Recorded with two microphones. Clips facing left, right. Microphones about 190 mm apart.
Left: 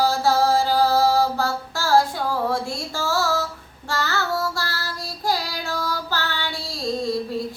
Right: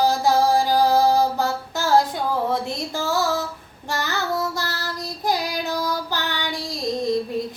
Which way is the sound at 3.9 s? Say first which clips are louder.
Even; 15° right (ahead or behind).